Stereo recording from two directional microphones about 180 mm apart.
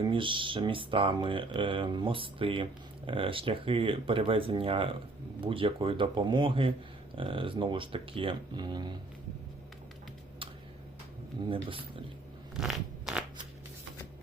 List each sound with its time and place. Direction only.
0.0 s speech: 30° right (ahead or behind)
11.4 s speech: 30° right (ahead or behind)
12.5 s crackle: 5° right (ahead or behind)